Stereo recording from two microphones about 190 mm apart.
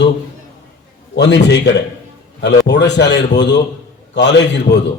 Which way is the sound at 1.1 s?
65° left (ahead or behind).